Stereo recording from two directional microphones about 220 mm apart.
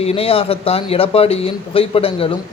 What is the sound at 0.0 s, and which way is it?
A man's voice, 25° left (ahead or behind).